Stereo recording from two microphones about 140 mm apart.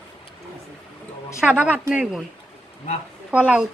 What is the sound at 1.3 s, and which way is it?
Speech, 10° right (ahead or behind).